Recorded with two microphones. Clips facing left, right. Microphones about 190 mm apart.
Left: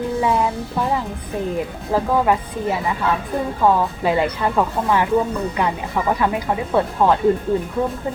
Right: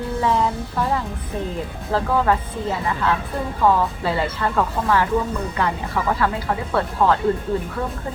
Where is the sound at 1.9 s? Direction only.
15° left (ahead or behind).